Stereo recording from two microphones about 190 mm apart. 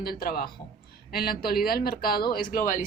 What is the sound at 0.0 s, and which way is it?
Speech, 50° left (ahead or behind).